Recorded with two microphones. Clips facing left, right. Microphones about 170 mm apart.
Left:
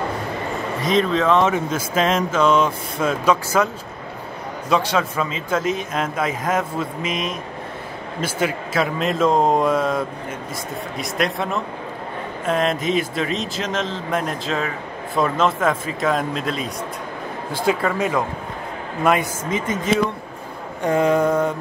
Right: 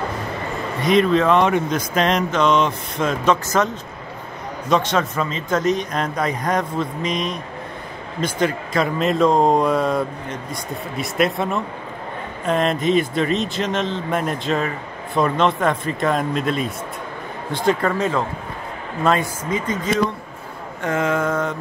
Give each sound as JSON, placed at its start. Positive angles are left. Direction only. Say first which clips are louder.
{"t": 0.8, "sound": "speech", "louder": "right 3 dB", "side_deg": 0}
{"t": 17.9, "sound": "mantra", "louder": "even", "side_deg": 15}
{"t": 19.0, "sound": "speech", "louder": "even", "side_deg": 20}
{"t": 20.8, "sound": "mantra", "louder": "left 4 dB", "side_deg": 15}